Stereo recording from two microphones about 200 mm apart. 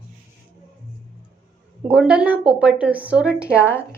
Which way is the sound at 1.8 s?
5° right (ahead or behind).